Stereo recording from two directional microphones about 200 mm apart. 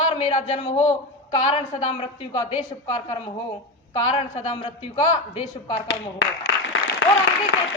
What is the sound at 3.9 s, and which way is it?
A man's voice, 25° left (ahead or behind).